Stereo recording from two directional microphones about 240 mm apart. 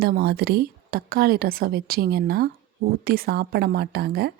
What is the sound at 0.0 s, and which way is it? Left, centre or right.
A woman's voice, right.